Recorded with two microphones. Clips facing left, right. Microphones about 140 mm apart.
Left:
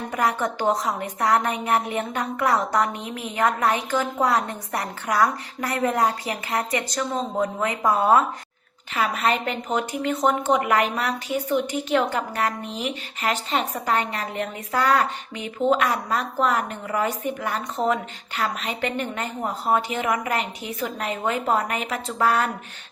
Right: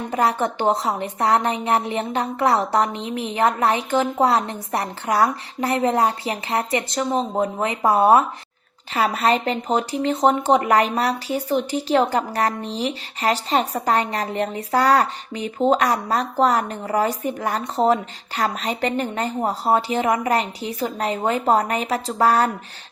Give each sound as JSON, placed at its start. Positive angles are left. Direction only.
{"t": 0.1, "sound": "a woman's voice", "side_deg": -30}